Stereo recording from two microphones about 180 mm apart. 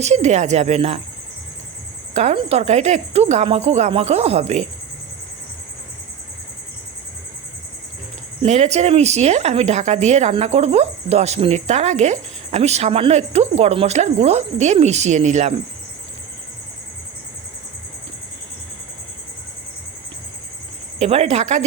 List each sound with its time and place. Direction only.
0.0 s a woman's voice: 40° right (ahead or behind)
2.1 s a woman's voice: 40° right (ahead or behind)
8.4 s a woman's voice: 35° right (ahead or behind)
21.0 s a woman's voice: 35° right (ahead or behind)